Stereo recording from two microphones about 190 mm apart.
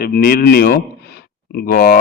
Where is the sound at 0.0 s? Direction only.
50° left (ahead or behind).